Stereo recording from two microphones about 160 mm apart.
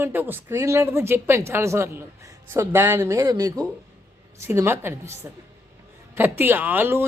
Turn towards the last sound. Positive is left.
turn(degrees=-15)  # may be behind; listen again after turning